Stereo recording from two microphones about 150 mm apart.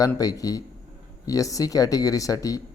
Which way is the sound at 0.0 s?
25° left (ahead or behind).